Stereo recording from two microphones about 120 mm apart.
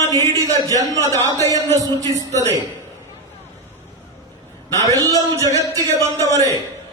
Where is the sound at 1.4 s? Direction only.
25° left (ahead or behind).